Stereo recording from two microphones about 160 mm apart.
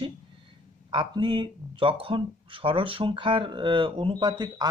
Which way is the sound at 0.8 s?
30° right (ahead or behind).